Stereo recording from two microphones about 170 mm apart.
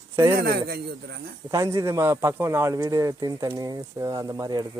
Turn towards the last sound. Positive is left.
turn(degrees=-25)  # may be behind; listen again after turning